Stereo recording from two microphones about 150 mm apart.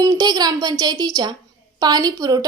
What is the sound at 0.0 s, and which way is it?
Speech, 25° right (ahead or behind).